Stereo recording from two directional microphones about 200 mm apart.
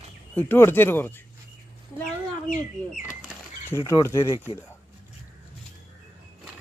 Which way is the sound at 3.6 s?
15° left (ahead or behind).